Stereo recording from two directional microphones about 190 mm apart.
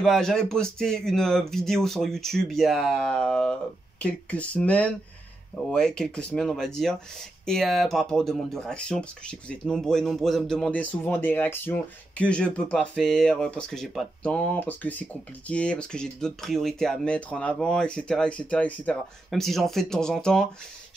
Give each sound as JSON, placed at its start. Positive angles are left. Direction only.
{"t": 0.0, "sound": "speech", "side_deg": 0}